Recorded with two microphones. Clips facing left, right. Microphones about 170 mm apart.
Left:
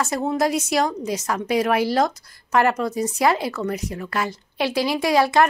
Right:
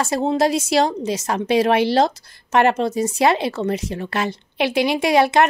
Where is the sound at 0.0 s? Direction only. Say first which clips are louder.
Right 3 dB; 25° right (ahead or behind).